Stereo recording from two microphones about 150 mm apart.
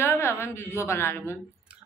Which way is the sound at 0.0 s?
15° left (ahead or behind).